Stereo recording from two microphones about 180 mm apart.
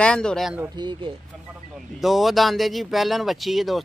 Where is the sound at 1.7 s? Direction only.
Centre (ahead or behind).